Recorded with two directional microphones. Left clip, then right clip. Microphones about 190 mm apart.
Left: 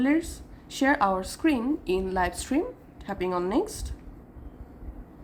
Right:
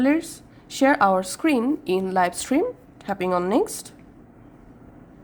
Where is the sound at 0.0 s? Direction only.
35° right (ahead or behind).